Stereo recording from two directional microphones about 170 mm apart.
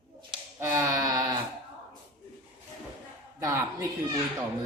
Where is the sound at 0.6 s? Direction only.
15° right (ahead or behind).